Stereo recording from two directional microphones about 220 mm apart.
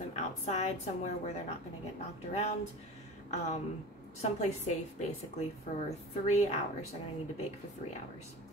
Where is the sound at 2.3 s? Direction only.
30° left (ahead or behind).